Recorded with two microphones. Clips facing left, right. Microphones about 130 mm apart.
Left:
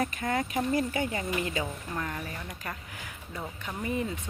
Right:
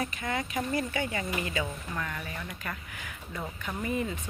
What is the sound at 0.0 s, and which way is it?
Speech, 45° left (ahead or behind).